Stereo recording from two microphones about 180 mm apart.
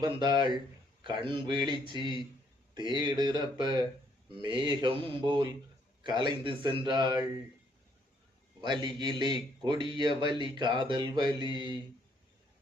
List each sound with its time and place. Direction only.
0.0 s speech: 25° right (ahead or behind)
8.6 s speech: 25° right (ahead or behind)